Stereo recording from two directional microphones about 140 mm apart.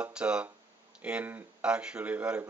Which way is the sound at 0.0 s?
5° right (ahead or behind).